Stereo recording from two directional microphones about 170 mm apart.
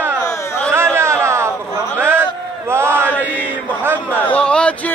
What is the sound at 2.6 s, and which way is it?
Speech, 15° right (ahead or behind).